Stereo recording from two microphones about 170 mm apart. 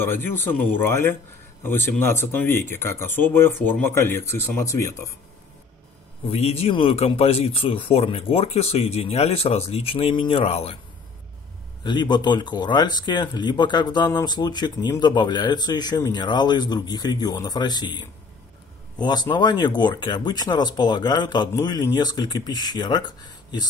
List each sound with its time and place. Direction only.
0.0 s speech: 10° left (ahead or behind)
6.3 s speech: 35° left (ahead or behind)
11.8 s speech: 25° left (ahead or behind)